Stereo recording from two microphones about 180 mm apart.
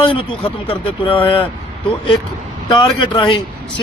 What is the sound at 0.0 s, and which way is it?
Speech, 30° left (ahead or behind).